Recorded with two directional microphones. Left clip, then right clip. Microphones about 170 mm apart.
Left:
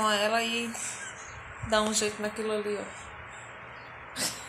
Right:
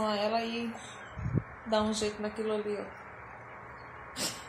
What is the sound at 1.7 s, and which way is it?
Speech, 10° left (ahead or behind).